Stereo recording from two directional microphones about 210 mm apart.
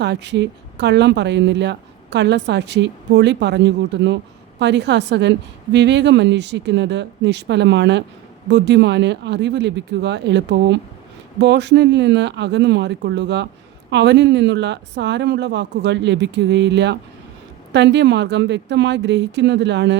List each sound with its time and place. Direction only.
0.0 s speech: 55° right (ahead or behind)